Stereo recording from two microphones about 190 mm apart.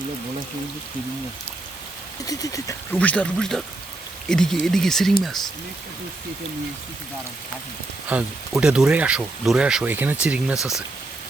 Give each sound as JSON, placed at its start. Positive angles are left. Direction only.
{"t": 2.2, "sound": "speech", "side_deg": 20}
{"t": 2.9, "sound": "speech", "side_deg": 5}
{"t": 8.1, "sound": "speech", "side_deg": -5}